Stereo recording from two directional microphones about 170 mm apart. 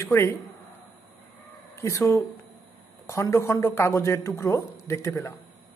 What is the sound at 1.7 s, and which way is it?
A man's voice, 20° left (ahead or behind).